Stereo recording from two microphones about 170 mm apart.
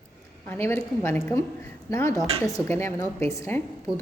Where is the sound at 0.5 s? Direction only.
10° left (ahead or behind).